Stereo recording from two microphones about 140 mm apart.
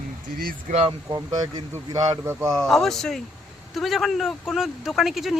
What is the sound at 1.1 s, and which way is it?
Speech, 25° right (ahead or behind).